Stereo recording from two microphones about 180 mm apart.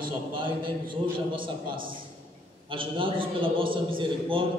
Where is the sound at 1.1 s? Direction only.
30° right (ahead or behind).